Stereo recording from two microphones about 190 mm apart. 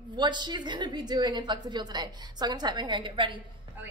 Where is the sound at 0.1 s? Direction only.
25° right (ahead or behind).